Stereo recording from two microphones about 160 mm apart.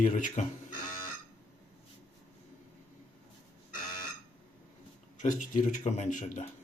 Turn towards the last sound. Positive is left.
turn(degrees=50)  # may be behind; listen again after turning